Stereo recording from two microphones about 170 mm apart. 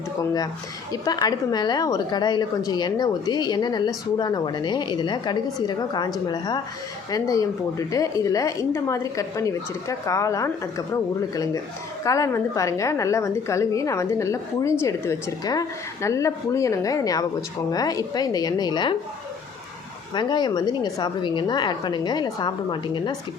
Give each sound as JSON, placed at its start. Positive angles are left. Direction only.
{"t": 1.0, "sound": "speech", "side_deg": 25}
{"t": 12.0, "sound": "a woman's voice", "side_deg": 20}
{"t": 20.1, "sound": "speech", "side_deg": 25}